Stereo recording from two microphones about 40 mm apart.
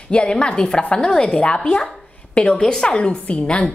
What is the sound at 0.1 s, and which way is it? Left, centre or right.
A woman's voice, left.